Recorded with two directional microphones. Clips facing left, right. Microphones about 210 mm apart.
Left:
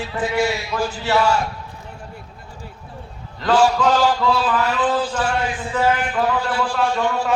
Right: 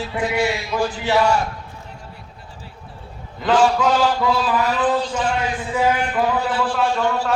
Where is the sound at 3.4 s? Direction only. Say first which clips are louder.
Even; 10° right (ahead or behind).